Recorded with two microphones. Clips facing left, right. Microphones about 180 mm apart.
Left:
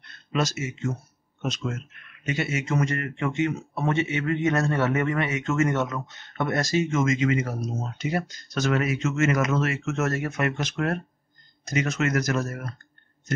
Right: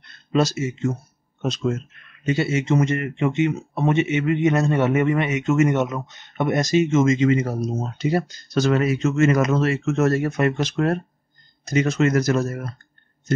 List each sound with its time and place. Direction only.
0.3 s speech: 30° right (ahead or behind)